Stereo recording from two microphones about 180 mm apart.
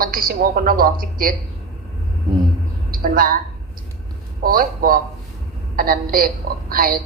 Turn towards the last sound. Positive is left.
turn(degrees=-55)  # may be behind; listen again after turning